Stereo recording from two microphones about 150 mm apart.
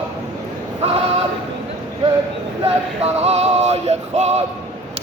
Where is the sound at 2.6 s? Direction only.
40° right (ahead or behind).